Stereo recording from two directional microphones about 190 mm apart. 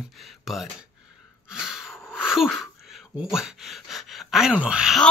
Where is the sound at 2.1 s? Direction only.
5° right (ahead or behind).